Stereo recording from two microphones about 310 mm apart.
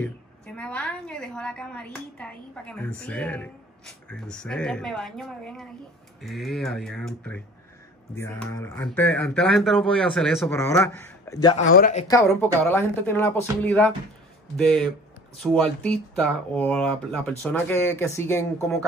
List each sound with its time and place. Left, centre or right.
0.6 s a woman's voice: centre
11.6 s speech: left
12.1 s a woman's voice: centre